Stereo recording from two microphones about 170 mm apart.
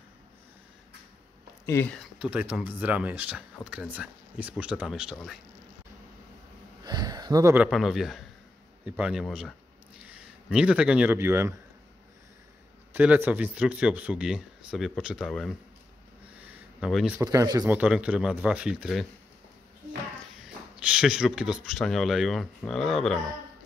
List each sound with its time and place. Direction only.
2.0 s speech: 5° right (ahead or behind)
6.8 s a sound: 25° right (ahead or behind)
7.5 s speech: 5° right (ahead or behind)
12.9 s speech: 10° right (ahead or behind)
16.3 s a sound: 5° right (ahead or behind)
17.2 s speech: 20° right (ahead or behind)
17.7 s speech: 5° right (ahead or behind)
20.7 s speech: 5° right (ahead or behind)